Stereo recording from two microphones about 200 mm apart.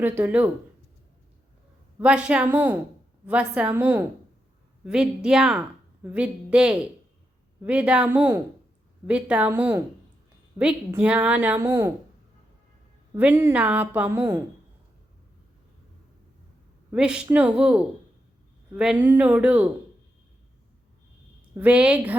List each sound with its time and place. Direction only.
0.0 s a woman's voice: 10° right (ahead or behind)
2.0 s a woman's voice: 5° right (ahead or behind)
13.1 s a woman's voice: 10° right (ahead or behind)
16.9 s a woman's voice: 5° right (ahead or behind)
21.5 s a woman's voice: 5° right (ahead or behind)